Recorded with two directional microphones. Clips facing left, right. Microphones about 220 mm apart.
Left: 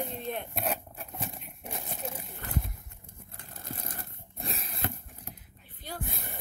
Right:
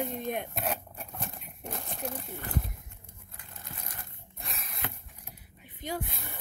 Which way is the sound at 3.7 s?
35° left (ahead or behind).